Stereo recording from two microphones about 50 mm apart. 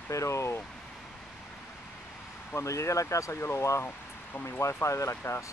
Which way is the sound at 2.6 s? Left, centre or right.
Left.